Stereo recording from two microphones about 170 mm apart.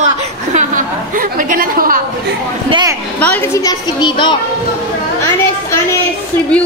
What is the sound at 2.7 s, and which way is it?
Speech, 25° right (ahead or behind).